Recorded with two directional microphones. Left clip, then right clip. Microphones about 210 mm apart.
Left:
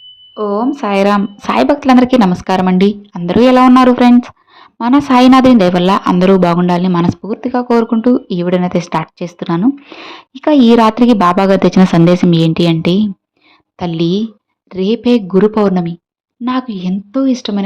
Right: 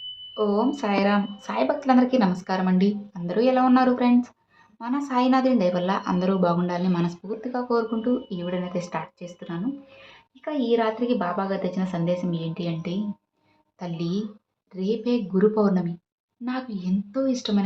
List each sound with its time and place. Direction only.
0.3 s a woman's voice: 30° left (ahead or behind)